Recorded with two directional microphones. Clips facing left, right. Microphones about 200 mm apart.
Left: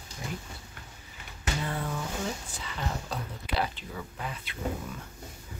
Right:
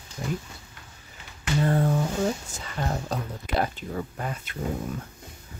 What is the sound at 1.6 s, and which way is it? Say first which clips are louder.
Speech: right 12 dB; 45° right (ahead or behind).